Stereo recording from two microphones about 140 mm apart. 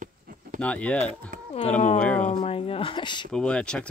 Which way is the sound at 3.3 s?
5° left (ahead or behind).